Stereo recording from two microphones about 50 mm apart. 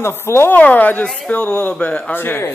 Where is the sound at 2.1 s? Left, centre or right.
Left.